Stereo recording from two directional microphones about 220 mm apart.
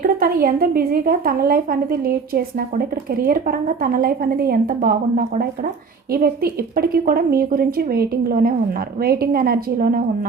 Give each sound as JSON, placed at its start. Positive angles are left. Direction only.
{"t": 0.2, "sound": "a woman's voice", "side_deg": -40}